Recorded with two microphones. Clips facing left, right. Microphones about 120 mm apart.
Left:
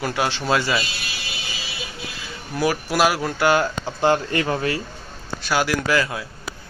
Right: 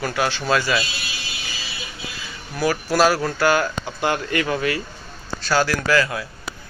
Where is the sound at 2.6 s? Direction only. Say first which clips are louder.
Right 1 dB; 20° left (ahead or behind).